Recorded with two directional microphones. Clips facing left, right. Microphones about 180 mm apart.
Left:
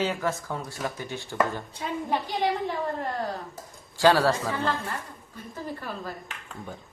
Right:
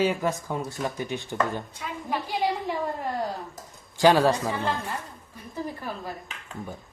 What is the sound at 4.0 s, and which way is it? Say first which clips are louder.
Speech: right 2 dB; 15° right (ahead or behind).